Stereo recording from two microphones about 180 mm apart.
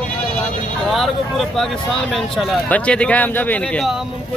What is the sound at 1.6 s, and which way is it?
Speech, centre (ahead or behind).